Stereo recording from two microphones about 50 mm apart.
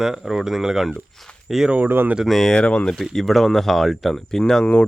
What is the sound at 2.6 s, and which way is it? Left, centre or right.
Speech, centre.